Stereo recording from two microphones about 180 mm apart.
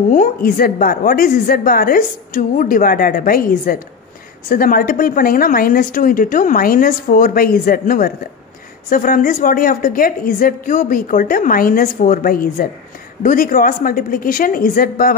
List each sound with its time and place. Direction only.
0.1 s a woman's voice: 50° left (ahead or behind)